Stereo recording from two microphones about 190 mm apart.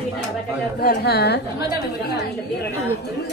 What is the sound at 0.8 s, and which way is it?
Speech, 60° left (ahead or behind).